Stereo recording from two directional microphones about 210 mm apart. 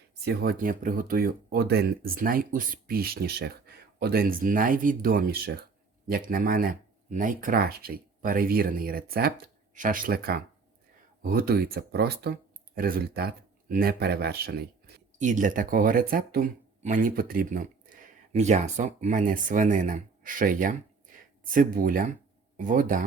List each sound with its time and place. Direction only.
0.3 s speech: 45° right (ahead or behind)